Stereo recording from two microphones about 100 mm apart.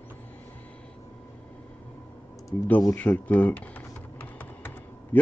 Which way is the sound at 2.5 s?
35° left (ahead or behind).